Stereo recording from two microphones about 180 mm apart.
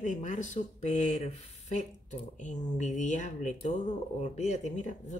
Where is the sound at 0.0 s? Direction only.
45° left (ahead or behind).